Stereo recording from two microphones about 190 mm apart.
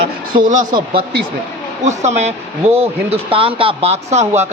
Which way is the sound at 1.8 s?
35° right (ahead or behind).